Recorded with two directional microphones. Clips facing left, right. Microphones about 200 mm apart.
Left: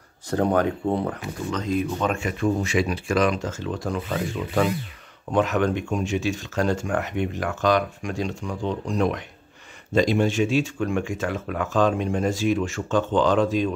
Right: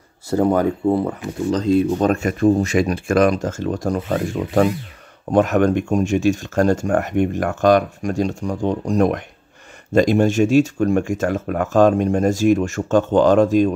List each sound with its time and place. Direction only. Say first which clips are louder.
0.3 s speech: right 4 dB; 5° right (ahead or behind)
1.5 s speech: right 9 dB; 30° right (ahead or behind)